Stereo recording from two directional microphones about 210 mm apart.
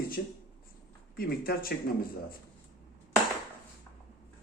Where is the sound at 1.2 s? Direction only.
45° left (ahead or behind).